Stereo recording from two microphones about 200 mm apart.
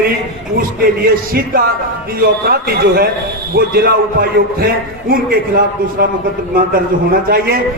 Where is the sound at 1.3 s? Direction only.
45° right (ahead or behind).